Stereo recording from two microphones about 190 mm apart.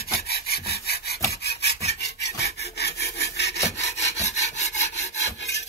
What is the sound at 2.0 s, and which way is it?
Wood, 60° left (ahead or behind).